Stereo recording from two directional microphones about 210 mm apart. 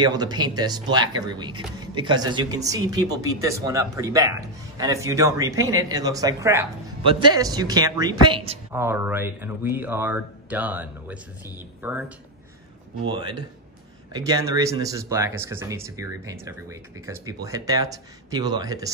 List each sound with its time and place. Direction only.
0.0 s speech: 20° right (ahead or behind)
8.7 s speech: 10° right (ahead or behind)
13.0 s speech: 20° right (ahead or behind)